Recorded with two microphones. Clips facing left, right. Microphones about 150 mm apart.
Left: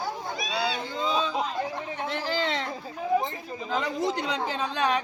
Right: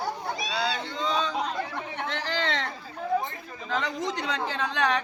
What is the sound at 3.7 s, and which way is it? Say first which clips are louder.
Speech: left 2 dB; 10° left (ahead or behind).